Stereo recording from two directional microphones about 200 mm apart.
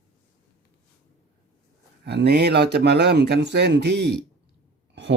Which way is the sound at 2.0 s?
55° right (ahead or behind).